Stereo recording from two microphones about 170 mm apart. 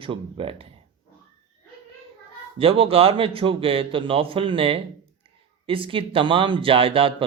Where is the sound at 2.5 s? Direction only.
35° right (ahead or behind).